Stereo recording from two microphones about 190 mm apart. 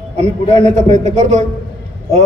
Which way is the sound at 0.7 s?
35° right (ahead or behind).